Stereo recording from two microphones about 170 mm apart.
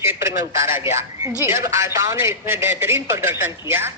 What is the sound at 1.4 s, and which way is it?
A man's voice, 15° right (ahead or behind).